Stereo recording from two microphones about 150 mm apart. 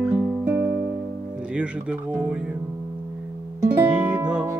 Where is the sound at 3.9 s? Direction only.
5° right (ahead or behind).